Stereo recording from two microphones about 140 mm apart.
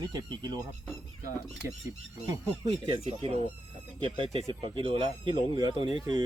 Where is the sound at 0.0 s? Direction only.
30° right (ahead or behind).